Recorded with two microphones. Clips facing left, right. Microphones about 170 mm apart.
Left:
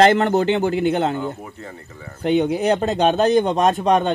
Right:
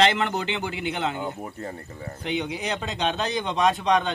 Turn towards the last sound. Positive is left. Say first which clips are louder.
# left 5 dB
turn(degrees=50)  # may be behind; listen again after turning